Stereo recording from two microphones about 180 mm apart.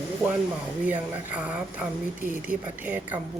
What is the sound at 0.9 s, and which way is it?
Speech, 10° right (ahead or behind).